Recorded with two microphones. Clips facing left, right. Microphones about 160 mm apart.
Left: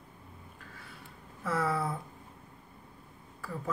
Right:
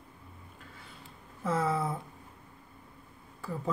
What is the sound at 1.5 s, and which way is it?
Speech, 20° right (ahead or behind).